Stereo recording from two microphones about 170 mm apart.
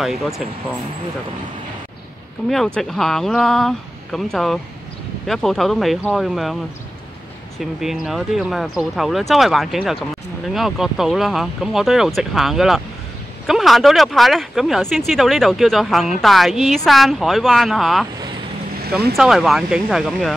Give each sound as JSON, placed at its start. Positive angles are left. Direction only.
{"t": 0.0, "sound": "speech", "side_deg": 0}
{"t": 2.5, "sound": "speech", "side_deg": 0}
{"t": 18.8, "sound": "boat", "side_deg": -70}
{"t": 19.1, "sound": "speech", "side_deg": 0}